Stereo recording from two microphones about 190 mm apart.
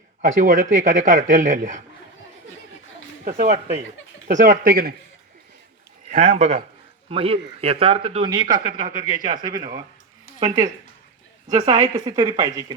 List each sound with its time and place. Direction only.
0.2 s a man's voice: 45° right (ahead or behind)
3.2 s a man's voice: 40° right (ahead or behind)
6.1 s speech: 40° right (ahead or behind)
8.4 s a man's voice: 45° right (ahead or behind)
11.6 s speech: 35° right (ahead or behind)
11.9 s speech: 20° right (ahead or behind)